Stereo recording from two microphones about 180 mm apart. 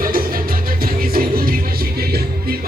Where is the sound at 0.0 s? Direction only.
55° right (ahead or behind).